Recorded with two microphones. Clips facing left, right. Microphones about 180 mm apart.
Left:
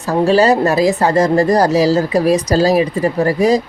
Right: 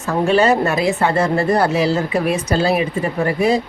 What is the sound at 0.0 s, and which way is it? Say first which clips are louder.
A woman's voice: left 3 dB; 35° left (ahead or behind).